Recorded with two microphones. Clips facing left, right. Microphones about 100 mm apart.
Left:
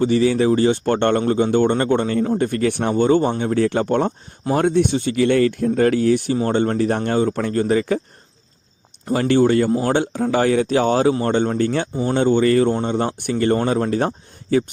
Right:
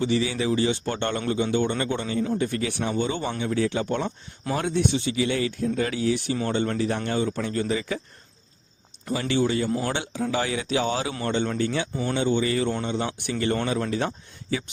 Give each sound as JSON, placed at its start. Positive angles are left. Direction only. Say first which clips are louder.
{"t": 0.0, "sound": "speech", "louder": "left 8 dB", "side_deg": 45}
{"t": 9.1, "sound": "speech", "louder": "left 8 dB", "side_deg": 50}